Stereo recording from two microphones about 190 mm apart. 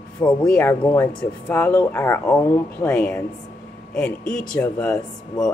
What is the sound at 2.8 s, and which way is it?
Speech, 5° left (ahead or behind).